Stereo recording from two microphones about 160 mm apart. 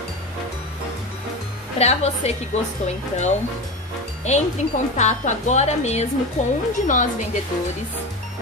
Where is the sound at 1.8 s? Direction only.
40° left (ahead or behind).